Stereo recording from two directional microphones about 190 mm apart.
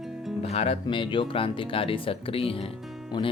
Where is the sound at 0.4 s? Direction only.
30° left (ahead or behind).